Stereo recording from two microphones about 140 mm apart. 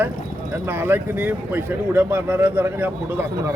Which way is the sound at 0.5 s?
15° right (ahead or behind).